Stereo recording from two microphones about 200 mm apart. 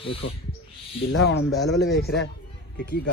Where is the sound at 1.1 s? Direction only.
60° left (ahead or behind).